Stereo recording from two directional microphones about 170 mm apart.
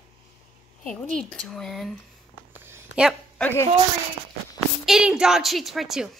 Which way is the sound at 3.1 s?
10° left (ahead or behind).